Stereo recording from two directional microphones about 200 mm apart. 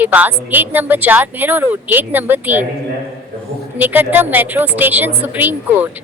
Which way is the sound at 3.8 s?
10° right (ahead or behind).